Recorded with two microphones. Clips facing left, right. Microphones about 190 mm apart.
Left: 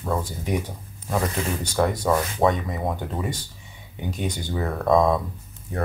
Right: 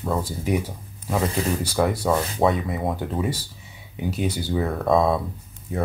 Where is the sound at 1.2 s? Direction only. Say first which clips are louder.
Right 2 dB; 35° right (ahead or behind).